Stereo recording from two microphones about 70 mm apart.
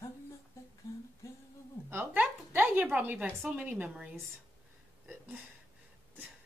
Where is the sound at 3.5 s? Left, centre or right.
Centre.